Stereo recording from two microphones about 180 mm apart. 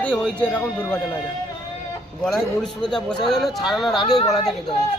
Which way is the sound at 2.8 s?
5° left (ahead or behind).